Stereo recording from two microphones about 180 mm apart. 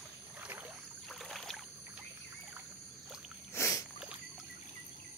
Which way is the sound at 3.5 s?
15° left (ahead or behind).